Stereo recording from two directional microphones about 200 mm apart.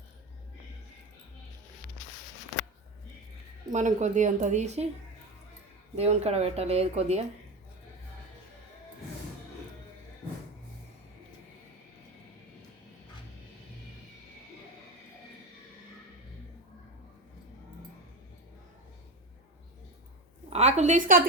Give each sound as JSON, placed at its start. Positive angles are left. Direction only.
{"t": 3.7, "sound": "a woman's voice", "side_deg": -35}
{"t": 6.0, "sound": "a woman's voice", "side_deg": -30}
{"t": 20.5, "sound": "a sound", "side_deg": -35}